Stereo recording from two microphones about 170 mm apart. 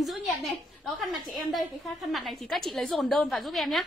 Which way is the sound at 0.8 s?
Centre (ahead or behind).